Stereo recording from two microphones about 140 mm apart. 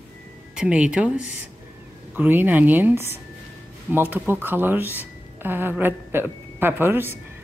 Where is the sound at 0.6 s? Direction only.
5° right (ahead or behind).